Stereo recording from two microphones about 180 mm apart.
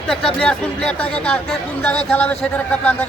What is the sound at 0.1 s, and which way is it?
Speech, 5° left (ahead or behind).